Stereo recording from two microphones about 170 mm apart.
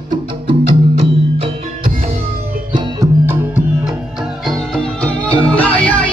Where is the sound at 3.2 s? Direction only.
10° right (ahead or behind).